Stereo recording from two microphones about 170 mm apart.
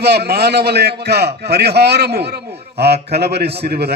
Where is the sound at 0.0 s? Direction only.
70° right (ahead or behind).